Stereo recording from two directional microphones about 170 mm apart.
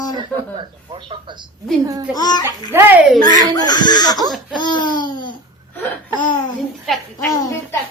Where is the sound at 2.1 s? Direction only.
25° left (ahead or behind).